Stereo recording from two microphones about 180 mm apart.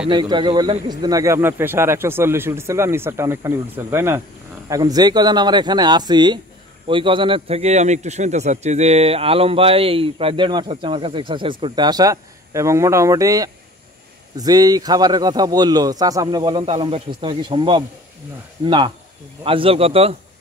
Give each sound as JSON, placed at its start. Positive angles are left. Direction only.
{"t": 0.1, "sound": "a man's voice", "side_deg": -25}